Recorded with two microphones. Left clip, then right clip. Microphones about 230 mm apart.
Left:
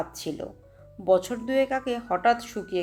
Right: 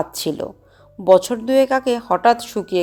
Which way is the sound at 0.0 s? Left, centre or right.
Right.